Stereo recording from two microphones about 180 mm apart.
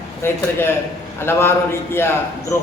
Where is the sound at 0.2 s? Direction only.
15° left (ahead or behind).